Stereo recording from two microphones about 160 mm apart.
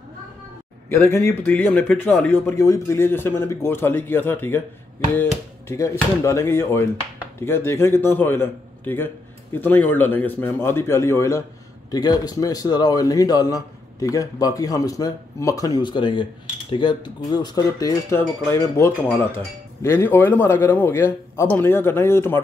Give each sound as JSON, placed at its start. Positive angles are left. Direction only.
{"t": 0.8, "sound": "a man's voice", "side_deg": 15}